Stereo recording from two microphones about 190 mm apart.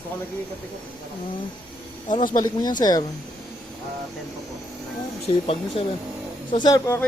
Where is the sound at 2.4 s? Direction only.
20° left (ahead or behind).